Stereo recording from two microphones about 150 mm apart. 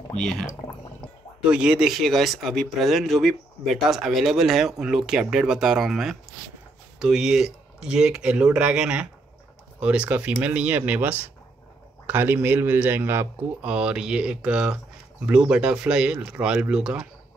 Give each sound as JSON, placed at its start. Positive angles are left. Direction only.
{"t": 0.1, "sound": "speech", "side_deg": 5}
{"t": 1.5, "sound": "speech", "side_deg": -5}